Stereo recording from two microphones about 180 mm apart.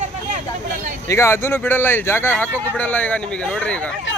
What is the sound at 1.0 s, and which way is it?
Speech, 15° left (ahead or behind).